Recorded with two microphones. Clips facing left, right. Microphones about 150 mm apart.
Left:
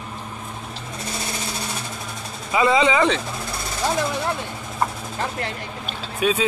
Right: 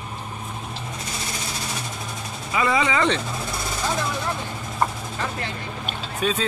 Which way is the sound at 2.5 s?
25° left (ahead or behind).